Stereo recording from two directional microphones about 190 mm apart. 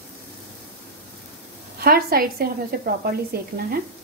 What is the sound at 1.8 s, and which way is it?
Speech, 50° right (ahead or behind).